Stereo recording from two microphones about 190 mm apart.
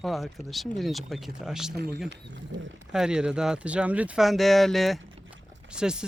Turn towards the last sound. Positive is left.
turn(degrees=-5)  # may be behind; listen again after turning